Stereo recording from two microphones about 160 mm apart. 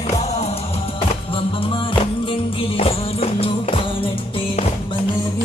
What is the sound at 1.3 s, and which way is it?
Music, 35° left (ahead or behind).